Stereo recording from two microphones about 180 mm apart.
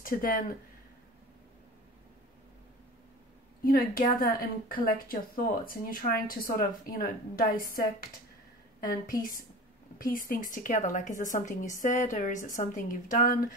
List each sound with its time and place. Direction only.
0.0 s speech: 50° left (ahead or behind)
3.6 s a woman's voice: 55° left (ahead or behind)
9.9 s a woman's voice: 50° left (ahead or behind)